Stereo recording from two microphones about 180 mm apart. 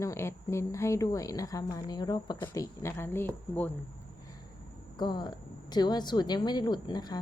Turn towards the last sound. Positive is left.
turn(degrees=25)  # may be behind; listen again after turning